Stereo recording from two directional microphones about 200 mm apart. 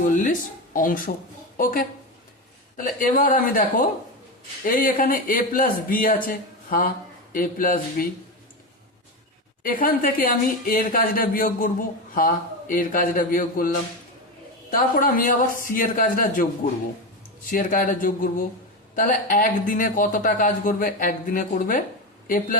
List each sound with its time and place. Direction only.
0.0 s a man's voice: 40° left (ahead or behind)
9.6 s a man's voice: 45° left (ahead or behind)
14.7 s a man's voice: 45° left (ahead or behind)
17.5 s a man's voice: 40° left (ahead or behind)